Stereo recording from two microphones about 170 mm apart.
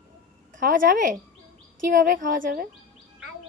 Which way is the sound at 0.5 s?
50° right (ahead or behind).